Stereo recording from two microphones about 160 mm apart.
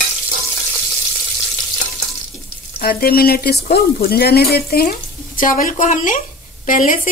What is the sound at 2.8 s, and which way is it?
A woman's voice, 70° left (ahead or behind).